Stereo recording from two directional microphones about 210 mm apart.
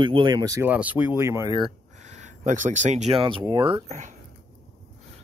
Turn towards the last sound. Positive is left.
turn(degrees=-35)  # may be behind; listen again after turning